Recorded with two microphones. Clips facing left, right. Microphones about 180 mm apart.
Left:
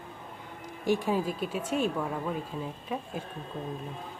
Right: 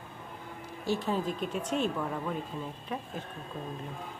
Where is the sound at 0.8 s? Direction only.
15° left (ahead or behind).